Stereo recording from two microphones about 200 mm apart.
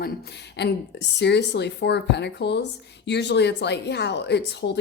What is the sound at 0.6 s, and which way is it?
A woman's voice, 60° left (ahead or behind).